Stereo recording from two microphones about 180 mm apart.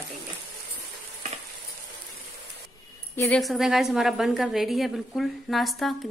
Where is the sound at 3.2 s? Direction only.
5° left (ahead or behind).